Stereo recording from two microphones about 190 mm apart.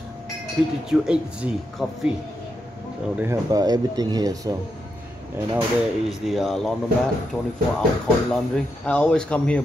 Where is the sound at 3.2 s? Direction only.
15° right (ahead or behind).